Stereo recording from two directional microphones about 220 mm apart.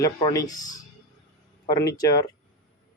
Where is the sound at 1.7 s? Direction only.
15° left (ahead or behind).